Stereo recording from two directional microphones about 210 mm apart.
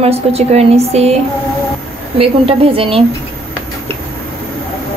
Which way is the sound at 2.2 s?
25° right (ahead or behind).